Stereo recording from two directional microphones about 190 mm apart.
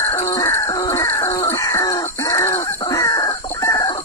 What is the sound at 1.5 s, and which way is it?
Chicken, 15° left (ahead or behind).